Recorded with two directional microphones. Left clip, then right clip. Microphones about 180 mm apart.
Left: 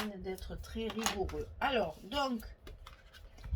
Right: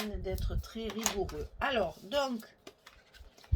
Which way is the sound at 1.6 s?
40° right (ahead or behind).